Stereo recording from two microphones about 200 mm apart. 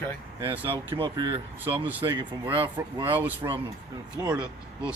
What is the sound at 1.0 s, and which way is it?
Speech, 20° right (ahead or behind).